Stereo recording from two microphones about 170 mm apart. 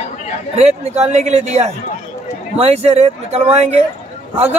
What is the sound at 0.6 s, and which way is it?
A man's voice, 40° right (ahead or behind).